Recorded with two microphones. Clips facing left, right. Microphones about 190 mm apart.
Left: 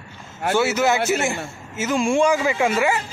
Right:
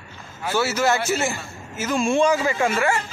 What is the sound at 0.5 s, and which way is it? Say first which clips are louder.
Speech: left 2 dB; 20° left (ahead or behind).